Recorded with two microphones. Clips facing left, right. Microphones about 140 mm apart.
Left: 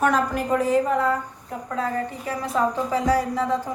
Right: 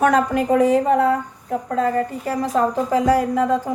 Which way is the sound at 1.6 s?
40° right (ahead or behind).